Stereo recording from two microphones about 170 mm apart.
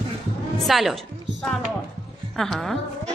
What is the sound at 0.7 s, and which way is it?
Speech, centre (ahead or behind).